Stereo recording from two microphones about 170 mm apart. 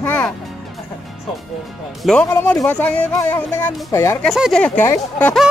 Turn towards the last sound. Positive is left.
turn(degrees=15)  # may be behind; listen again after turning